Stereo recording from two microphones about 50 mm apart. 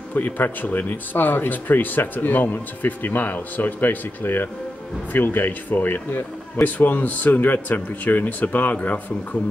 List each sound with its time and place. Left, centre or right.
0.1 s a man's voice: left